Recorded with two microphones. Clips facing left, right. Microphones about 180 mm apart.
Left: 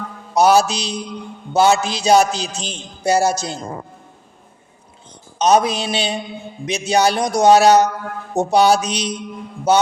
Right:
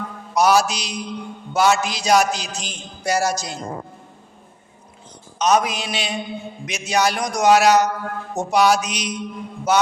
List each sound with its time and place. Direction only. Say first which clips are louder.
0.3 s a man's voice: left 3 dB; 30° left (ahead or behind)
5.4 s a man's voice: left 4 dB; 30° left (ahead or behind)